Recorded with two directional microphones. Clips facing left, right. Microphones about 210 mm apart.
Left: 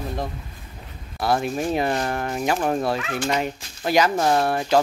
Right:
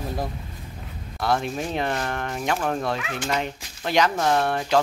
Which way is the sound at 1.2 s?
5° left (ahead or behind).